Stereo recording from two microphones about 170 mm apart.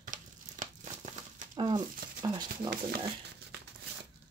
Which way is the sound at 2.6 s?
25° right (ahead or behind).